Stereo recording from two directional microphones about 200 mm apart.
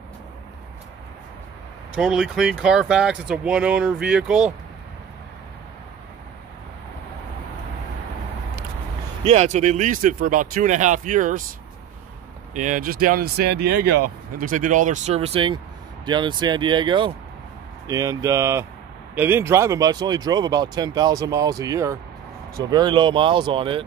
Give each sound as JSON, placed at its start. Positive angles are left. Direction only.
{"t": 2.0, "sound": "speech", "side_deg": -5}
{"t": 9.2, "sound": "speech", "side_deg": -35}
{"t": 12.5, "sound": "speech", "side_deg": -40}